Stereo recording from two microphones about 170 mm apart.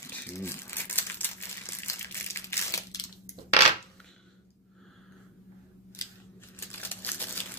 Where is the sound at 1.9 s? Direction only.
15° left (ahead or behind).